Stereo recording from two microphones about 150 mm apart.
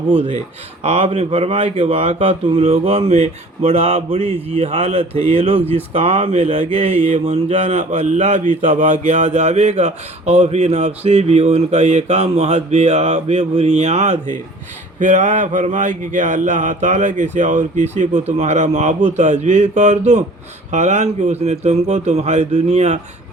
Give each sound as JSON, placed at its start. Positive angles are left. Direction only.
{"t": 0.2, "sound": "speech", "side_deg": -45}